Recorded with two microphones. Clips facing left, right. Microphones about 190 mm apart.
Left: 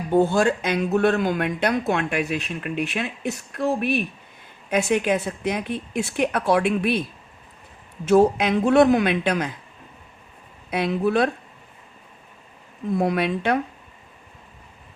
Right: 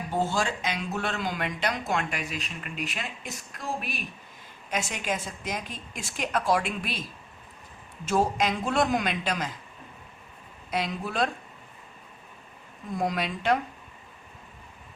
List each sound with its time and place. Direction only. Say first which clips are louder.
0.1 s speech: left 10 dB; 55° left (ahead or behind)
8.0 s speech: left 8 dB; 60° left (ahead or behind)
10.7 s speech: left 9 dB; 60° left (ahead or behind)
13.0 s speech: left 6 dB; 60° left (ahead or behind)